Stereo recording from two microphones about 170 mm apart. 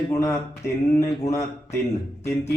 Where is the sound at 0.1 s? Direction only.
20° left (ahead or behind).